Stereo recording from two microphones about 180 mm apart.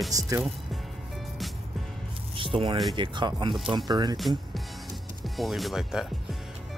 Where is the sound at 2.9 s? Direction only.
25° right (ahead or behind).